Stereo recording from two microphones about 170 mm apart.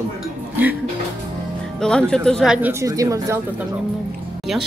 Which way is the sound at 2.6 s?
15° right (ahead or behind).